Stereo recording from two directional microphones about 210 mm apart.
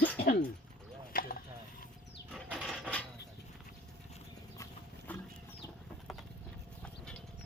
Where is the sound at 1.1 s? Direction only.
45° left (ahead or behind).